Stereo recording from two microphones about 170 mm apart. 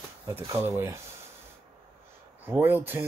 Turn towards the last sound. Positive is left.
turn(degrees=-10)  # may be behind; listen again after turning